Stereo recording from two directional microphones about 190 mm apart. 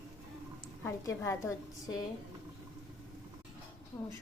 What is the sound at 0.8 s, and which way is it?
A woman's voice, 15° left (ahead or behind).